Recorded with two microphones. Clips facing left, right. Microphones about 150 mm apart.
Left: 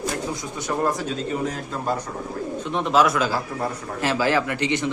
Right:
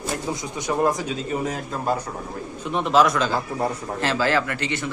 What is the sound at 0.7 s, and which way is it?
A man's voice, 10° right (ahead or behind).